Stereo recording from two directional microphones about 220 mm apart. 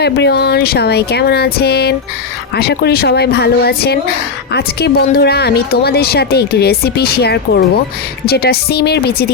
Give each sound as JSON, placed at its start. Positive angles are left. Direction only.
{"t": 0.0, "sound": "speech", "side_deg": 50}